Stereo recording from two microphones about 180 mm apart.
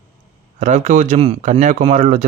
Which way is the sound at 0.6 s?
40° right (ahead or behind).